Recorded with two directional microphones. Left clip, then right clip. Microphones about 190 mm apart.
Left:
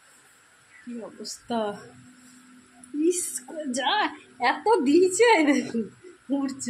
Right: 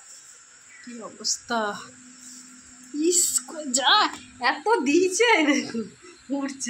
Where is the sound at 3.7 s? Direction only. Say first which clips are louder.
Right 5 dB; 10° left (ahead or behind).